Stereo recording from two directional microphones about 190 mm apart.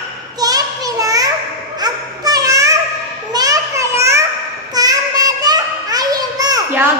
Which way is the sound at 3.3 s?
20° right (ahead or behind).